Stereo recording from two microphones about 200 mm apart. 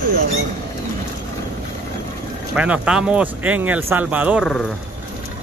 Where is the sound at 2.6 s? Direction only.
5° right (ahead or behind).